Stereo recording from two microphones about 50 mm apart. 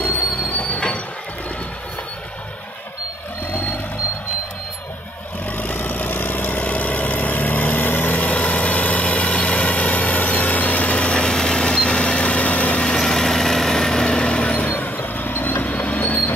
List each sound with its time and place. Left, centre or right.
0.0 s train: left
0.7 s train: left
5.6 s vehicle: left
12.8 s vehicle: centre
14.5 s vehicle: left
15.6 s train: left